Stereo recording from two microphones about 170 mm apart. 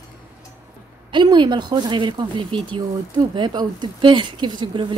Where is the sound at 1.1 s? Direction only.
25° right (ahead or behind).